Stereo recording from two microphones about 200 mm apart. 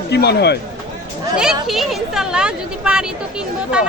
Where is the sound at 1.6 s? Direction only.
Centre (ahead or behind).